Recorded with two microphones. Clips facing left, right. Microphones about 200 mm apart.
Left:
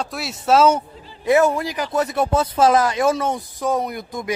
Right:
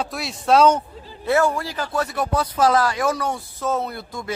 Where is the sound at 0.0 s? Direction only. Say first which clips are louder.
Even; centre (ahead or behind).